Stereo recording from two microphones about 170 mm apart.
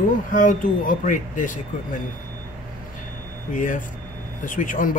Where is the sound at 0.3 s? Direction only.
50° left (ahead or behind).